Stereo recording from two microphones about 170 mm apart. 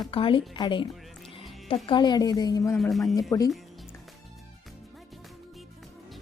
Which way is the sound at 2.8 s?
Centre (ahead or behind).